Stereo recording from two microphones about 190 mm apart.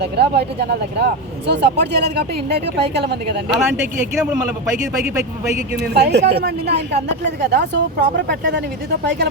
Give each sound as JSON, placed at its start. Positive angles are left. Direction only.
{"t": 0.0, "sound": "speech", "side_deg": -60}
{"t": 3.7, "sound": "speech", "side_deg": -10}
{"t": 5.7, "sound": "speech", "side_deg": -60}